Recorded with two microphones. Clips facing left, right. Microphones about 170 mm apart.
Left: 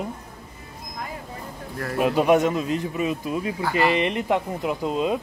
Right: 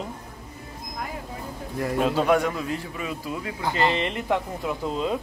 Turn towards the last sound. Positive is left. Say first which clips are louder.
# left 3 dB
turn(degrees=20)  # may be behind; listen again after turning